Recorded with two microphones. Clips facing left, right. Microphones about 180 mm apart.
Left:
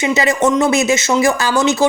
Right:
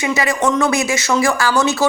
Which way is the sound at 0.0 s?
25° left (ahead or behind).